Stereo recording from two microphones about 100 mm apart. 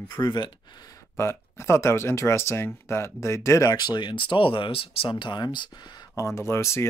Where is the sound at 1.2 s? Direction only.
25° left (ahead or behind); by 6.1 s 45° left (ahead or behind).